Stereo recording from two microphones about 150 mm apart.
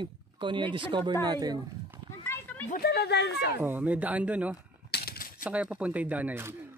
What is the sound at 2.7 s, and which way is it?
Speech, 90° left.